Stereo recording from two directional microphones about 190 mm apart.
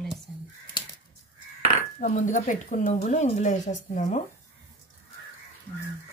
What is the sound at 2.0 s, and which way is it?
Speech, 40° left (ahead or behind).